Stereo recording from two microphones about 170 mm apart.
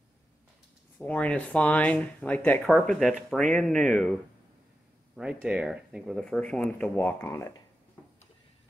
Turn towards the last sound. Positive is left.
turn(degrees=15)  # may be behind; listen again after turning